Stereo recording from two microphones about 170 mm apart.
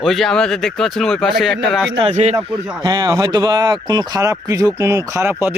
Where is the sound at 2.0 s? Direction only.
40° right (ahead or behind).